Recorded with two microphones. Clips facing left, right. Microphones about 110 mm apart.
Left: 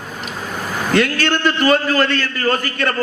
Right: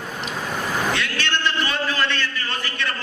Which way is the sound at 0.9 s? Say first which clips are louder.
Left 9 dB; 45° left (ahead or behind).